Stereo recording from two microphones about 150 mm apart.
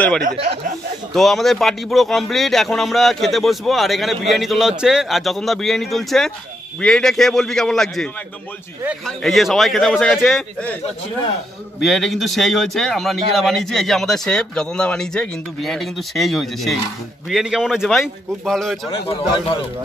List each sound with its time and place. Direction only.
1.1 s speech: centre (ahead or behind)
11.8 s speech: centre (ahead or behind)
18.9 s a man's voice: 35° left (ahead or behind)